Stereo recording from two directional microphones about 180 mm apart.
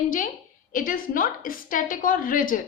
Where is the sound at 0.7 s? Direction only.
50° left (ahead or behind).